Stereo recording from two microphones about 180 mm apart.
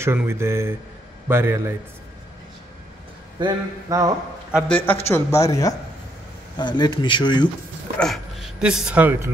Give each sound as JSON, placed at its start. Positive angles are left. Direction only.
{"t": 0.0, "sound": "speech", "side_deg": -15}
{"t": 3.3, "sound": "speech", "side_deg": -20}
{"t": 4.6, "sound": "speech", "side_deg": 10}
{"t": 8.0, "sound": "speech", "side_deg": 0}